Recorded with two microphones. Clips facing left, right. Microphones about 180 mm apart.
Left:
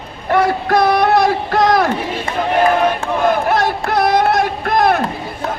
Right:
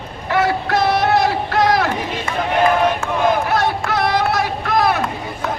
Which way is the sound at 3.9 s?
50° left (ahead or behind).